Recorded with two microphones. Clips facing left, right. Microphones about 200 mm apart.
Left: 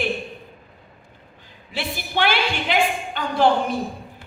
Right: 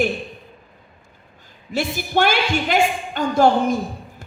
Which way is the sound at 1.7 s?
45° right (ahead or behind).